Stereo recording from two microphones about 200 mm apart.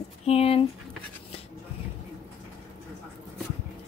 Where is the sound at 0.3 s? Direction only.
30° left (ahead or behind).